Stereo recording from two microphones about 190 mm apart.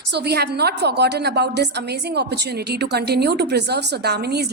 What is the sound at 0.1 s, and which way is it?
A woman's voice, 60° right (ahead or behind).